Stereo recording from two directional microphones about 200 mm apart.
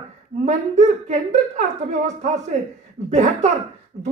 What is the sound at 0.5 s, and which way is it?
A woman's voice, 35° right (ahead or behind).